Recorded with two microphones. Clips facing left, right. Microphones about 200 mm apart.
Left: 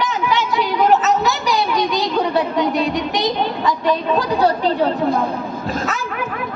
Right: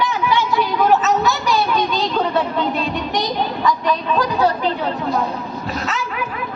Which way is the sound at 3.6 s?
25° left (ahead or behind).